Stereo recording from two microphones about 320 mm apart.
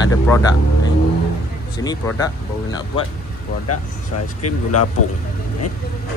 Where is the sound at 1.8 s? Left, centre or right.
Centre.